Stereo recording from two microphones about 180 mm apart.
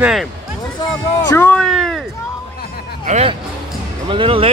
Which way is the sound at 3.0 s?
40° right (ahead or behind).